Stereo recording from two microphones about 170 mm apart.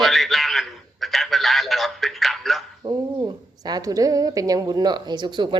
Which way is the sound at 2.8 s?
20° right (ahead or behind).